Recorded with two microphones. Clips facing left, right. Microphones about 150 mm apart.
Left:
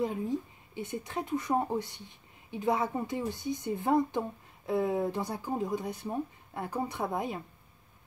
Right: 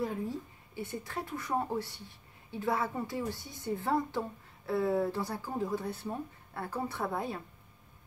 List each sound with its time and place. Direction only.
0.0 s a woman's voice: 20° left (ahead or behind)